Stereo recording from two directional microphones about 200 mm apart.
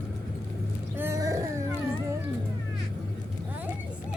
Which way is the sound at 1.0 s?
15° right (ahead or behind).